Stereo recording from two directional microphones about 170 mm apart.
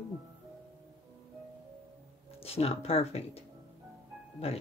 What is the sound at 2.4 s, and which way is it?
Speech, 35° left (ahead or behind).